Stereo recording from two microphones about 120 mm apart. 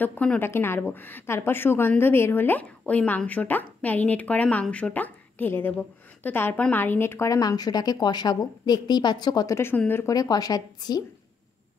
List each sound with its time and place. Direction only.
0.0 s a woman's voice: 10° left (ahead or behind); by 9.6 s 35° left (ahead or behind)
9.6 s speech: 15° left (ahead or behind)
10.0 s a woman's voice: 35° left (ahead or behind)